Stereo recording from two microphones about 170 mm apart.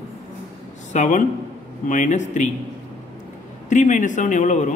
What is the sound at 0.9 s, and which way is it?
A man's voice, 50° left (ahead or behind).